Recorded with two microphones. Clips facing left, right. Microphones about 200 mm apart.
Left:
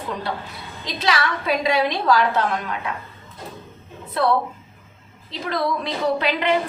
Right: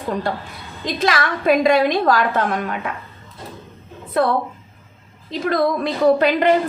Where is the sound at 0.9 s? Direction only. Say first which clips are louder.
Right 3 dB; 50° right (ahead or behind).